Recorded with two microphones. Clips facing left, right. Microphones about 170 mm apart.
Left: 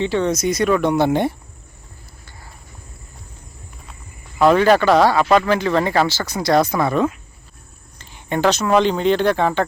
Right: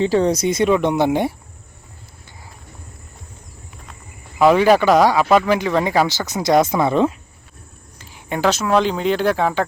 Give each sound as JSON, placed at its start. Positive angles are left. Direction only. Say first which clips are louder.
{"t": 0.0, "sound": "speech", "louder": "right 2 dB", "side_deg": -35}
{"t": 4.4, "sound": "speech", "louder": "right 1 dB", "side_deg": -10}
{"t": 7.9, "sound": "a sound", "louder": "left 3 dB", "side_deg": -5}
{"t": 8.7, "sound": "speech", "louder": "left 3 dB", "side_deg": -5}